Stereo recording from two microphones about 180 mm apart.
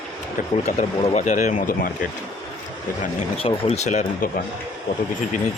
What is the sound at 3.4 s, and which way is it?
Speech, 30° left (ahead or behind).